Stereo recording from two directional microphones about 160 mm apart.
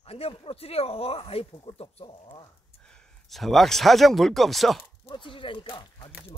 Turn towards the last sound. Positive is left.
turn(degrees=30)  # may be behind; listen again after turning